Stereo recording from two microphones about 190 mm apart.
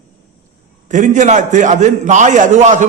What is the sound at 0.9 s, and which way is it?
A man's voice, 40° right (ahead or behind).